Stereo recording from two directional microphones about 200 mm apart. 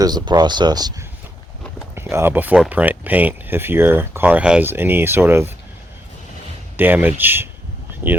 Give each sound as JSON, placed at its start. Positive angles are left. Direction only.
{"t": 0.0, "sound": "speech", "side_deg": -20}
{"t": 6.7, "sound": "speech", "side_deg": -10}